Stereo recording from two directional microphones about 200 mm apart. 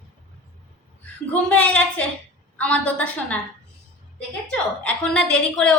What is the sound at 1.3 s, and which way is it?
A woman's voice, 5° left (ahead or behind).